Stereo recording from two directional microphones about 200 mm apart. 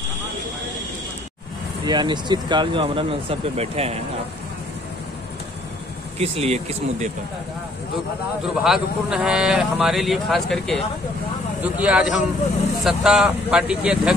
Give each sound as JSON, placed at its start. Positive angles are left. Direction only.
{"t": 1.9, "sound": "speech", "side_deg": -20}
{"t": 6.1, "sound": "speech", "side_deg": -30}
{"t": 8.6, "sound": "speech", "side_deg": -5}